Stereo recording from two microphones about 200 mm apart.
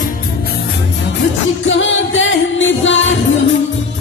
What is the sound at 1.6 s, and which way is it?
Music, 70° left (ahead or behind).